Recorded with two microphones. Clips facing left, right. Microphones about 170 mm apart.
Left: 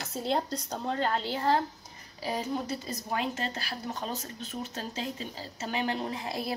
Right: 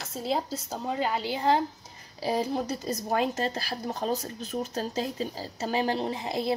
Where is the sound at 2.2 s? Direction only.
35° right (ahead or behind).